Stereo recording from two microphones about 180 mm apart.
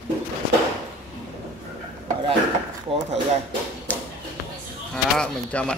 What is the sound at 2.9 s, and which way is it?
Speech, 30° right (ahead or behind).